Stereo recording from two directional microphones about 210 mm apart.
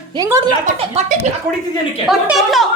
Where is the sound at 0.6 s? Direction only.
35° right (ahead or behind).